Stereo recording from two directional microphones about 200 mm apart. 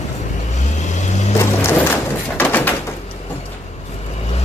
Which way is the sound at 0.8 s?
35° left (ahead or behind).